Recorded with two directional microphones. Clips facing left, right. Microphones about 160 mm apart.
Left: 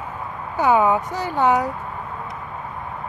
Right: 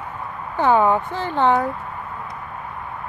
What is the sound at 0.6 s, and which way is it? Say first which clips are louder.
Speech: even; 10° left (ahead or behind).